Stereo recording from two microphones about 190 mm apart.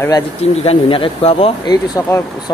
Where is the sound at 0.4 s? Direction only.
30° left (ahead or behind).